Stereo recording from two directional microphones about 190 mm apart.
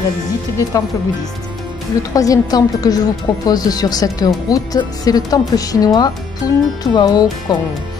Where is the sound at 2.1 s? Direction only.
20° left (ahead or behind).